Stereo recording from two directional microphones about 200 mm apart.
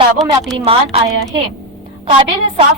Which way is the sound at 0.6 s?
30° right (ahead or behind).